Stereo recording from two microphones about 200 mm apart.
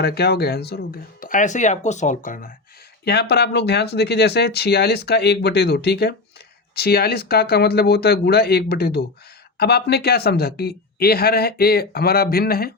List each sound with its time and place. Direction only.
0.0 s speech: 50° left (ahead or behind)
3.0 s speech: 55° left (ahead or behind)